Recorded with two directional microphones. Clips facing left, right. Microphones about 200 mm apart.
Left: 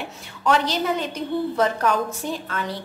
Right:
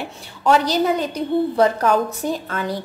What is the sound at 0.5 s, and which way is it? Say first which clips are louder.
A woman's voice: right 4 dB; 40° right (ahead or behind).